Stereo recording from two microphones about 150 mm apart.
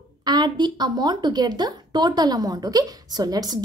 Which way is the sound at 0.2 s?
30° right (ahead or behind).